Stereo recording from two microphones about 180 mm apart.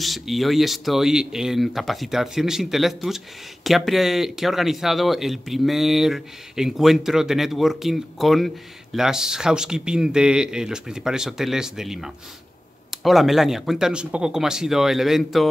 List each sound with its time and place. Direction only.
0.0 s speech: centre (ahead or behind)